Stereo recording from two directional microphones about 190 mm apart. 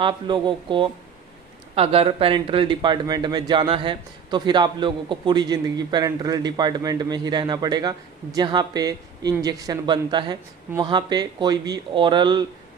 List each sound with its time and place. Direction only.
0.0 s speech: 25° right (ahead or behind)